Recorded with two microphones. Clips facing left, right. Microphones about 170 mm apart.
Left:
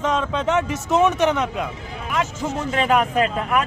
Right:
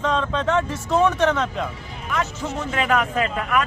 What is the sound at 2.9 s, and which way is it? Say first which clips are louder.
Speech: left 3 dB; 25° left (ahead or behind).